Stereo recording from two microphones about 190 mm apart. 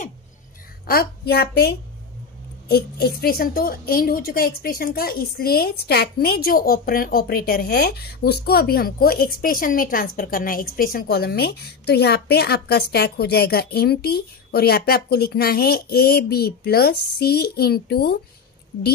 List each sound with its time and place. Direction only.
0.8 s a woman's voice: 55° left (ahead or behind)